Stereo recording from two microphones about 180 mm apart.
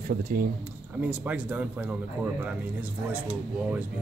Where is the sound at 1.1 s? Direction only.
10° right (ahead or behind).